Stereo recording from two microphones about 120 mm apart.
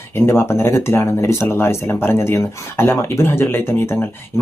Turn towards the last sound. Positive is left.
turn(degrees=20)  # may be behind; listen again after turning